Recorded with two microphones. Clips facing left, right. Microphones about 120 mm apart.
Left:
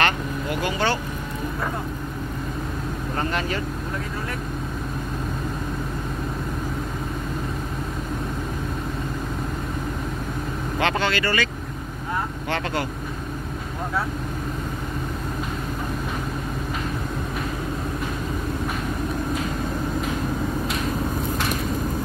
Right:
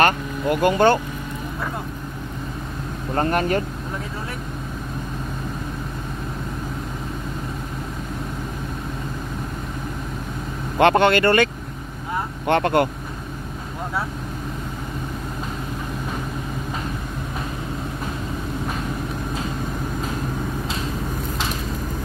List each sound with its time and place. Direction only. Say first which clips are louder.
0.0 s vehicle: right 4 dB; 50° right (ahead or behind)
3.2 s speech: right 7 dB; 50° right (ahead or behind)
10.8 s speech: right 8 dB; 55° right (ahead or behind)
12.4 s speech: right 11 dB; 55° right (ahead or behind)